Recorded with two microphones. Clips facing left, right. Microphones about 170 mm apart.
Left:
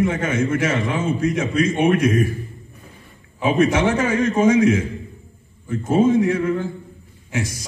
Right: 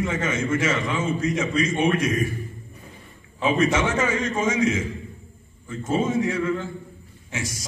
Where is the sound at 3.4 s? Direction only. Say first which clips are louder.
Left 4 dB; 60° left (ahead or behind).